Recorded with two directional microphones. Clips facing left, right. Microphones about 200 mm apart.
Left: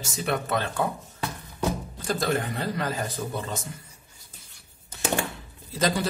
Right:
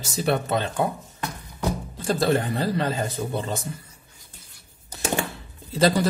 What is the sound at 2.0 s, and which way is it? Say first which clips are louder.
A man's voice: right 5 dB; 30° right (ahead or behind).